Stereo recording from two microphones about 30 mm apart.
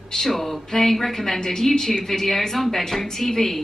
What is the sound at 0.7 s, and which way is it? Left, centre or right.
A woman's voice, centre.